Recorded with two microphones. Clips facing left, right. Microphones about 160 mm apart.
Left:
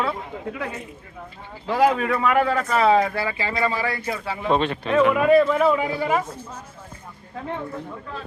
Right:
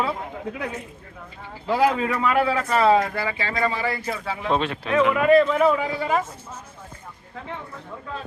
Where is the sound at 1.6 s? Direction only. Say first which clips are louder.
Left 1 dB; 10° right (ahead or behind).